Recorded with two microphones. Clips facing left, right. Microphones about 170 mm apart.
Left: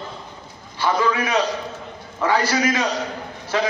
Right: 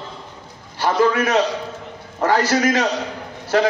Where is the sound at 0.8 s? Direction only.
50° right (ahead or behind).